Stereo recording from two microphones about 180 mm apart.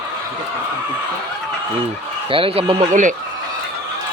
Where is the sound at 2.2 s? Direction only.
30° right (ahead or behind).